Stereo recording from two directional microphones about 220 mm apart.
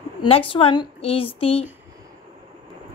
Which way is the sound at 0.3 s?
25° left (ahead or behind).